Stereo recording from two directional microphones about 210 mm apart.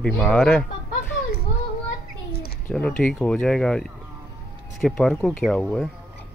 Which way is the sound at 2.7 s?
5° left (ahead or behind).